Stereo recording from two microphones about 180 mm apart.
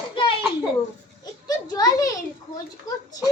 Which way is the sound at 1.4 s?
20° left (ahead or behind).